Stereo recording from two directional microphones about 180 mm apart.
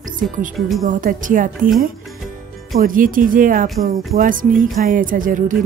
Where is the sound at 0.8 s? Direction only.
45° right (ahead or behind).